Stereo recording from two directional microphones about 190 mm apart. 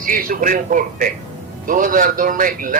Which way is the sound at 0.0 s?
45° right (ahead or behind).